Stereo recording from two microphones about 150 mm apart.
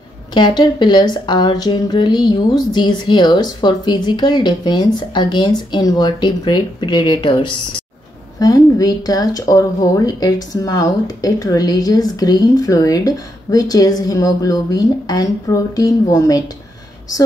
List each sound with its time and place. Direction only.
0.3 s speech: 30° left (ahead or behind)